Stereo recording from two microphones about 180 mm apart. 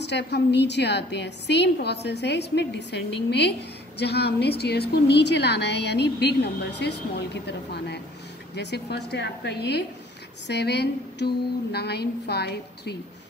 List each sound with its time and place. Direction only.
0.0 s a woman's voice: 70° left (ahead or behind)